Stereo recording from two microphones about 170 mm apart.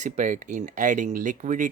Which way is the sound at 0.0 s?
45° right (ahead or behind).